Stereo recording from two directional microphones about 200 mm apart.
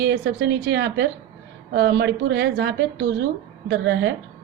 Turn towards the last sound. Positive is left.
turn(degrees=-60)  # may be behind; listen again after turning